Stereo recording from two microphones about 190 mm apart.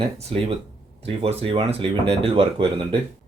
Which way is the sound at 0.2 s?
30° right (ahead or behind).